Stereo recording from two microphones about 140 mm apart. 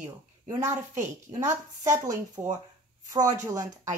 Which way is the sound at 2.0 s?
25° right (ahead or behind).